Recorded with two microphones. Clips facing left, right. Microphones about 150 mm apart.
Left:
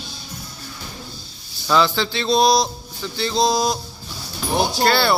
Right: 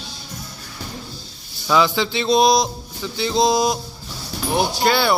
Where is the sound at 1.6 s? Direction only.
10° right (ahead or behind).